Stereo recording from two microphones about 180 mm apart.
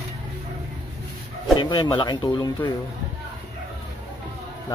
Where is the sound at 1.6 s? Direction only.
25° left (ahead or behind).